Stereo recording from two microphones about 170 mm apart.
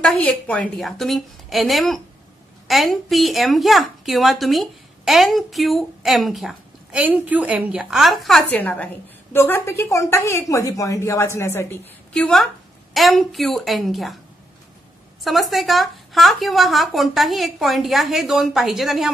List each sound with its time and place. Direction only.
0.0 s a woman's voice: 5° left (ahead or behind)
15.2 s a woman's voice: centre (ahead or behind)